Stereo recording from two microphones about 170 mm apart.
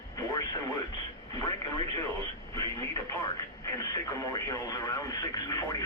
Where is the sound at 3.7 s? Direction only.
20° left (ahead or behind).